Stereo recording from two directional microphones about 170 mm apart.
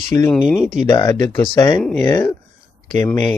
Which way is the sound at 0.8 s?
25° left (ahead or behind).